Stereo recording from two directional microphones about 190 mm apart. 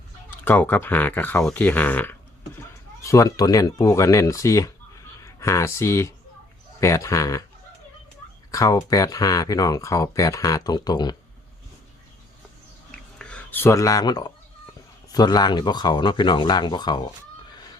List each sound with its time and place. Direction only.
0.4 s speech: 10° left (ahead or behind)
8.4 s speech: 15° left (ahead or behind)
12.9 s a sound: 5° left (ahead or behind); by 14.3 s 20° left (ahead or behind)
15.1 s speech: 20° left (ahead or behind)